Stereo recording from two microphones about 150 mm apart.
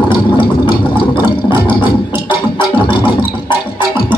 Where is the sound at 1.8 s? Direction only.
35° left (ahead or behind).